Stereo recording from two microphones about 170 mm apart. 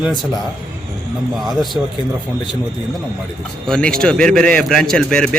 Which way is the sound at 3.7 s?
5° left (ahead or behind).